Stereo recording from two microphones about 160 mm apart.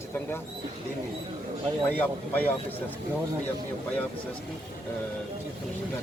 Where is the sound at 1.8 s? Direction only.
10° left (ahead or behind).